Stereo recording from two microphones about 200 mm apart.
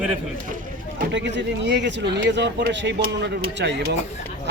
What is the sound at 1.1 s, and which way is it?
Speech, 60° right (ahead or behind).